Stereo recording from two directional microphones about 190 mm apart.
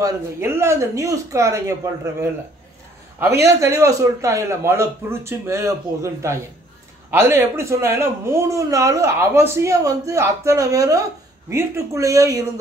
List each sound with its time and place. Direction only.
0.0 s speech: 15° right (ahead or behind)
3.3 s speech: 15° right (ahead or behind)